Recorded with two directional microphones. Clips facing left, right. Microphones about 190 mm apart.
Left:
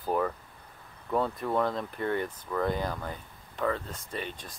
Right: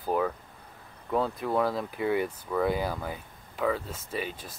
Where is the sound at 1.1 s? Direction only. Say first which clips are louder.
Right 1 dB; centre (ahead or behind).